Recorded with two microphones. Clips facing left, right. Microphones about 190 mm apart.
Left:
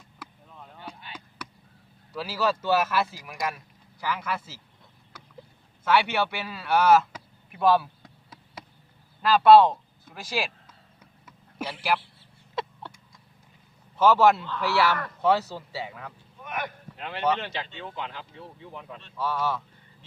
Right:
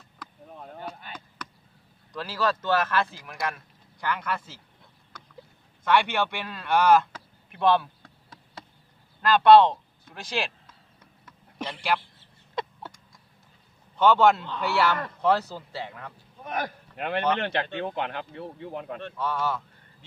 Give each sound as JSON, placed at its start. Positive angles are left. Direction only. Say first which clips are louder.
{"t": 0.6, "sound": "a sound", "louder": "right 4 dB", "side_deg": -45}
{"t": 2.1, "sound": "speech", "louder": "left 1 dB", "side_deg": 10}
{"t": 5.8, "sound": "a sound", "louder": "even", "side_deg": 5}
{"t": 9.2, "sound": "speech", "louder": "even", "side_deg": 5}
{"t": 11.0, "sound": "a sound", "louder": "even", "side_deg": 10}
{"t": 13.9, "sound": "a man's voice", "louder": "even", "side_deg": 5}
{"t": 16.4, "sound": "speech", "louder": "right 3 dB", "side_deg": -35}
{"t": 17.0, "sound": "speech", "louder": "right 1 dB", "side_deg": -60}
{"t": 19.1, "sound": "speech", "louder": "left 1 dB", "side_deg": 0}